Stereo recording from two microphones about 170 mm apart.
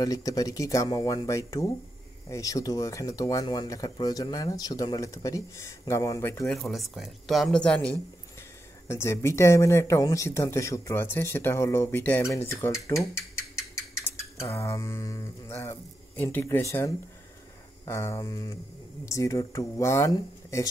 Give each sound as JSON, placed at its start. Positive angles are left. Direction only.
{"t": 0.0, "sound": "speech", "side_deg": 20}
{"t": 6.4, "sound": "speech", "side_deg": 0}
{"t": 14.0, "sound": "speech", "side_deg": 15}
{"t": 17.8, "sound": "speech", "side_deg": 15}